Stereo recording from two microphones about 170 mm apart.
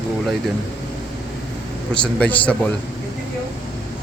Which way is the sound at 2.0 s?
10° left (ahead or behind).